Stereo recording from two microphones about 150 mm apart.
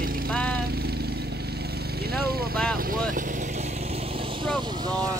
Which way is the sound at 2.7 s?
75° right (ahead or behind).